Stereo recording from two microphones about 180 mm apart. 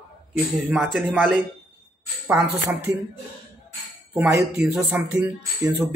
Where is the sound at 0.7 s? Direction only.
Centre (ahead or behind).